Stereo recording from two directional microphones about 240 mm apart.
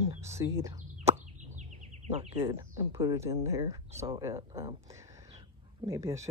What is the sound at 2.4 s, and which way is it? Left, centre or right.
Speech, centre.